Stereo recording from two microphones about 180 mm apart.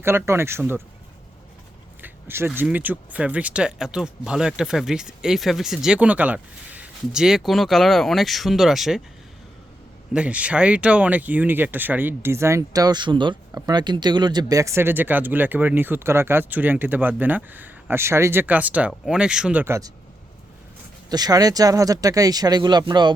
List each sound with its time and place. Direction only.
0.0 s speech: 15° right (ahead or behind)
2.0 s a sound: 10° right (ahead or behind)
2.6 s speech: 10° right (ahead or behind)
10.1 s speech: 5° right (ahead or behind)
21.1 s speech: 20° right (ahead or behind)